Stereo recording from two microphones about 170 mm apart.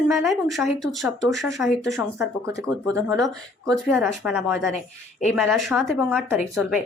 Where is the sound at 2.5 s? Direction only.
20° right (ahead or behind).